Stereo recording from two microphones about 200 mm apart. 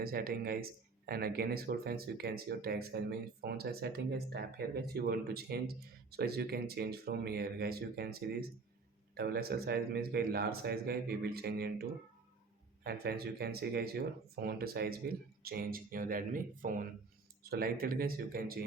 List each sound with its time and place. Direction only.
0.0 s speech: 50° right (ahead or behind)